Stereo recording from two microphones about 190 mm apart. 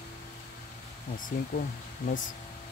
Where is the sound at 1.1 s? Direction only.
45° left (ahead or behind).